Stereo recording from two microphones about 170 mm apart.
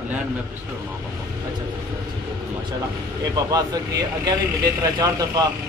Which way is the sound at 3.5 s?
20° right (ahead or behind).